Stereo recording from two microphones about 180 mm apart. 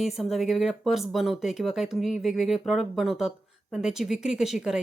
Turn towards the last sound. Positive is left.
turn(degrees=-5)  # may be behind; listen again after turning